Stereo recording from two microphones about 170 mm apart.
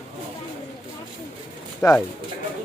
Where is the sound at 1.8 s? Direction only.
15° left (ahead or behind).